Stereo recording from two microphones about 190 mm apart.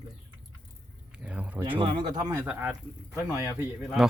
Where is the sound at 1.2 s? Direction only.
5° right (ahead or behind).